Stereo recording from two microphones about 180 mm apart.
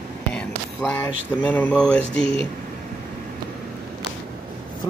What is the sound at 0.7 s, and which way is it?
Speech, 10° left (ahead or behind).